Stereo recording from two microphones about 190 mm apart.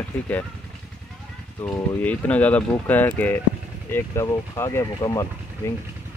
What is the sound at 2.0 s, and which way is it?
Speech, 10° left (ahead or behind).